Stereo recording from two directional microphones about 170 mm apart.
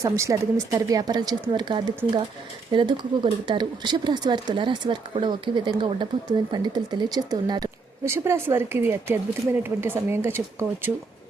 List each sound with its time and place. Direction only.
0.0 s a woman's voice: 20° right (ahead or behind)